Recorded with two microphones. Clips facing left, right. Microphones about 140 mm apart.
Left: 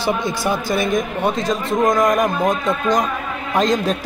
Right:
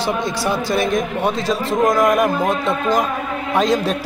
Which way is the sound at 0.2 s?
Centre (ahead or behind).